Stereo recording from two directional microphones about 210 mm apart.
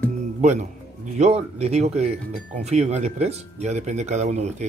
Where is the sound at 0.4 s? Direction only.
35° right (ahead or behind).